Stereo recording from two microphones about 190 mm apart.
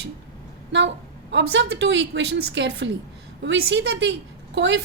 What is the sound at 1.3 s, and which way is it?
A woman's voice, 70° right (ahead or behind).